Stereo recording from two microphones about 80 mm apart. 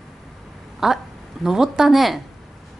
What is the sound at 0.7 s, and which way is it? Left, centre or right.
A woman's voice, centre.